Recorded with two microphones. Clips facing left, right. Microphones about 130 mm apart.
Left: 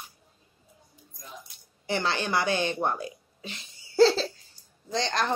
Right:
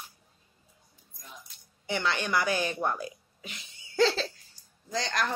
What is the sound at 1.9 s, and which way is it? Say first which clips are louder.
A woman's voice: left 2 dB; 30° left (ahead or behind).